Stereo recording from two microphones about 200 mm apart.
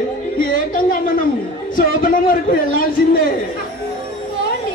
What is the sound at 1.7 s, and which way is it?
Speech, 45° left (ahead or behind).